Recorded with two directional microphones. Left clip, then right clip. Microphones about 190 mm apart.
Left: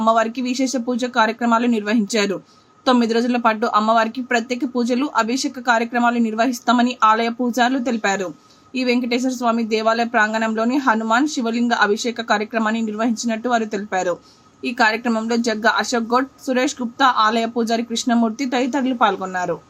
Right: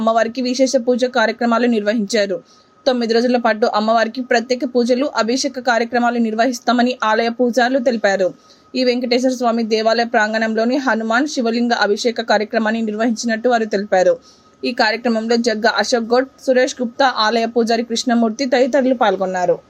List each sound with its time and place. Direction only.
0.0 s speech: 15° right (ahead or behind)